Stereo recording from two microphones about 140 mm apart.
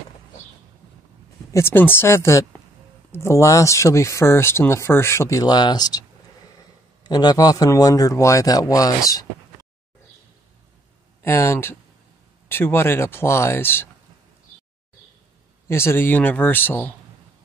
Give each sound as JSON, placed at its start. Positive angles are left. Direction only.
{"t": 1.5, "sound": "a man's voice", "side_deg": 15}
{"t": 11.2, "sound": "speech", "side_deg": 20}
{"t": 15.7, "sound": "speech", "side_deg": 15}